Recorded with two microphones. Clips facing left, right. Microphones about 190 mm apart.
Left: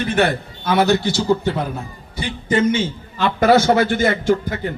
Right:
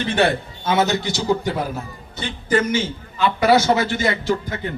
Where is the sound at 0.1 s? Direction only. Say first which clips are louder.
Right 1 dB; 25° right (ahead or behind).